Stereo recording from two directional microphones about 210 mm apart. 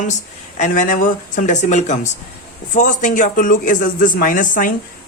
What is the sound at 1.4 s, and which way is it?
Speech, 35° left (ahead or behind).